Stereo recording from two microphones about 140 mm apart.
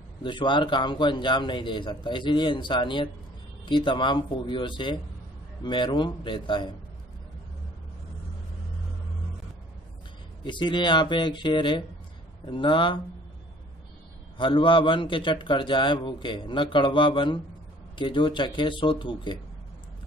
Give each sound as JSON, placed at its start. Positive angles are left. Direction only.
{"t": 0.2, "sound": "a man's voice", "side_deg": 35}
{"t": 10.4, "sound": "a man's voice", "side_deg": 35}
{"t": 14.4, "sound": "a man's voice", "side_deg": 35}